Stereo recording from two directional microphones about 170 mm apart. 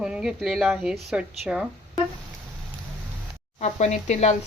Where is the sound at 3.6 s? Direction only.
40° left (ahead or behind).